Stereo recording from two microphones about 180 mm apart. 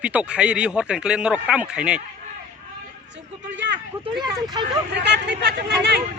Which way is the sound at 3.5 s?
75° right (ahead or behind).